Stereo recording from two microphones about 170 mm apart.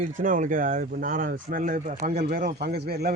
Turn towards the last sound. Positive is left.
turn(degrees=-70)  # may be behind; listen again after turning